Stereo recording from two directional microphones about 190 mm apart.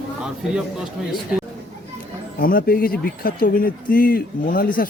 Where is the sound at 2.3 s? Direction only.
50° left (ahead or behind).